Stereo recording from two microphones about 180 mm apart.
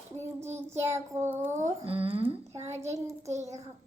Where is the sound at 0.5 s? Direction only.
15° right (ahead or behind).